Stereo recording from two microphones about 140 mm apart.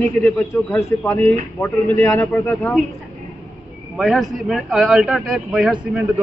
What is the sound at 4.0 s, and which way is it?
A man's voice, centre (ahead or behind).